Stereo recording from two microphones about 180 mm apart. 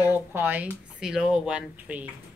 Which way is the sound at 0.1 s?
10° right (ahead or behind).